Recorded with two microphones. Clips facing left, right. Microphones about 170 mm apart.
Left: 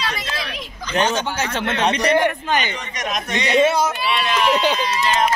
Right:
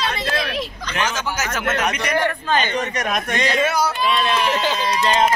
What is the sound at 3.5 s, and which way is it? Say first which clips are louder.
A man's voice: left 6 dB; 25° left (ahead or behind).